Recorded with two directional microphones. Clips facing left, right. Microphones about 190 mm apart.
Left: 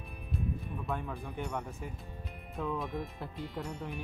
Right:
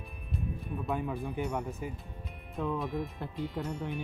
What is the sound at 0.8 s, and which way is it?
Speech, 5° right (ahead or behind).